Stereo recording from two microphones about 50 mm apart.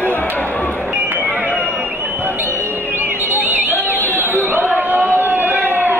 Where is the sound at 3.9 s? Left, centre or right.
Left.